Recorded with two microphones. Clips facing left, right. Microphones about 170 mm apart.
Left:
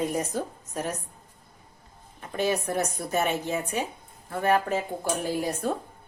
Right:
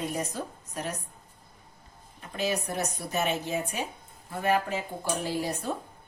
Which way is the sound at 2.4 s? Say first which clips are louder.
Left 4 dB; 50° left (ahead or behind).